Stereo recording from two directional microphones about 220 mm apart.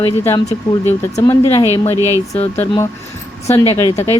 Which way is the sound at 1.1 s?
15° left (ahead or behind).